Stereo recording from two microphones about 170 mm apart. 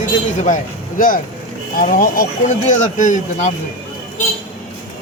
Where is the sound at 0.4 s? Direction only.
50° left (ahead or behind).